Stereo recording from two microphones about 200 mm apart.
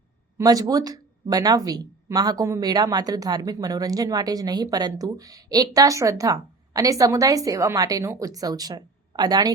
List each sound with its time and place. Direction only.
0.3 s a woman's voice: 20° right (ahead or behind)